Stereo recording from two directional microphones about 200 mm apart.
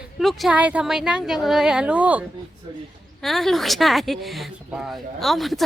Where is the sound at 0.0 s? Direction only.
Centre (ahead or behind).